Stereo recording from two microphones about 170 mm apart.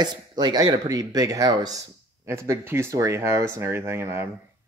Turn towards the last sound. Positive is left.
turn(degrees=-15)  # may be behind; listen again after turning